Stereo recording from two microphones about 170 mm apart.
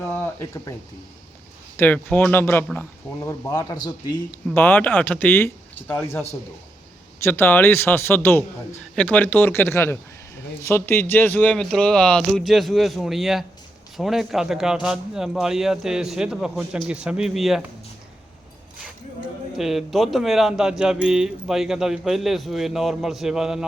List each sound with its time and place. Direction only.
0.1 s a sound: 10° left (ahead or behind)
1.7 s a man's voice: 10° left (ahead or behind)
4.5 s a man's voice: 10° left (ahead or behind)
19.5 s speech: centre (ahead or behind)